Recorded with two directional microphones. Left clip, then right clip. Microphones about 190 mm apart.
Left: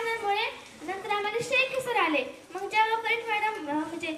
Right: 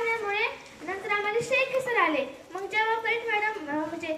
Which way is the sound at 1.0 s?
25° left (ahead or behind).